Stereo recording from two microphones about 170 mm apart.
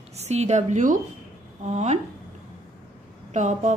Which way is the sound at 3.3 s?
45° right (ahead or behind).